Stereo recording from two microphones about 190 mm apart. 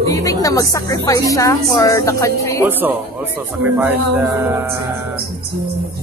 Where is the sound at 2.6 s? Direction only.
10° right (ahead or behind).